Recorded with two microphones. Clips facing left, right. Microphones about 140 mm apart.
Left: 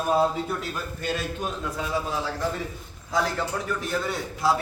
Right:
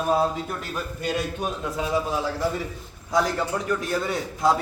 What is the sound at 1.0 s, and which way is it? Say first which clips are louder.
Speech: right 2 dB; 15° right (ahead or behind).